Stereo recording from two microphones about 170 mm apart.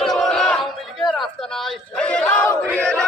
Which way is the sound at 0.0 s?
Centre (ahead or behind).